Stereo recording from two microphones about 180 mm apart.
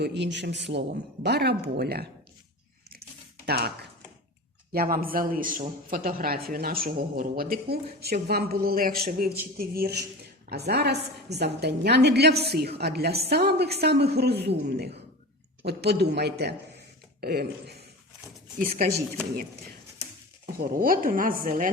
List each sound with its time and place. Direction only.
0.0 s a woman's voice: 75° right (ahead or behind); by 2.0 s 60° right (ahead or behind)
3.4 s speech: 60° right (ahead or behind)
4.7 s a man's voice: 55° right (ahead or behind)
20.5 s a man's voice: 50° right (ahead or behind)